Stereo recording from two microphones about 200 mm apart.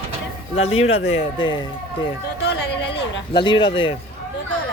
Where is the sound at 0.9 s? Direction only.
85° left.